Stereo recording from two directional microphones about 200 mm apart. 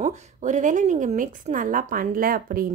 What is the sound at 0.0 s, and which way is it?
A woman's voice, 35° right (ahead or behind).